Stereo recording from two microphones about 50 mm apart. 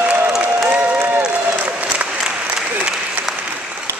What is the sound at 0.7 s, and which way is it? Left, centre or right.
Applause, right.